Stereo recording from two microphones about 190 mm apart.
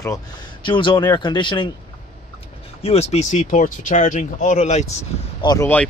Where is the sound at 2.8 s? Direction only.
35° left (ahead or behind).